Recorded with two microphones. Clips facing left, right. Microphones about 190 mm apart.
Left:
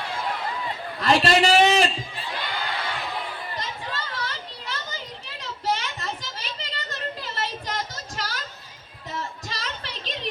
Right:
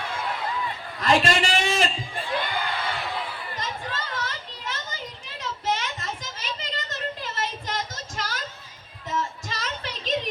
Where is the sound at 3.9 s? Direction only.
45° right (ahead or behind).